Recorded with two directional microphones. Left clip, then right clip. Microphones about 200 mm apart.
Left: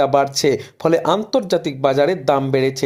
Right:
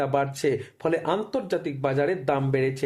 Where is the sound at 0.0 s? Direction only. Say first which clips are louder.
Left 9 dB; 35° left (ahead or behind).